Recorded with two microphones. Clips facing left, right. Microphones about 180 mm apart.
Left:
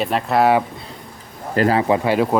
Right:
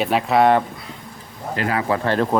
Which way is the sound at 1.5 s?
35° left (ahead or behind).